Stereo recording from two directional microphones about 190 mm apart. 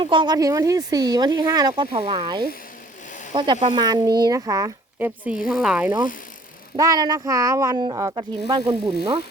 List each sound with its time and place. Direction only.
0.0 s speech: 25° right (ahead or behind); by 5.9 s 5° right (ahead or behind)
6.7 s speech: 20° right (ahead or behind)